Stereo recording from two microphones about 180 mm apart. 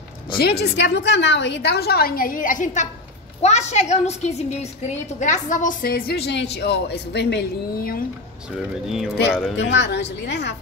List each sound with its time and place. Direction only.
0.4 s a woman's voice: 65° left (ahead or behind)
8.8 s speech: centre (ahead or behind)
9.6 s a woman's voice: 75° left (ahead or behind)